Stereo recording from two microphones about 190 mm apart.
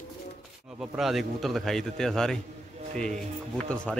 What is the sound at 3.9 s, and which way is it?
Speech, 5° left (ahead or behind).